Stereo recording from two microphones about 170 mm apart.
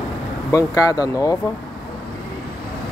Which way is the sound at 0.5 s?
20° left (ahead or behind).